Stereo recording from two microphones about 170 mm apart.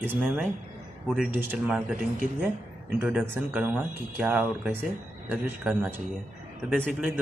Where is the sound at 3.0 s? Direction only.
10° right (ahead or behind).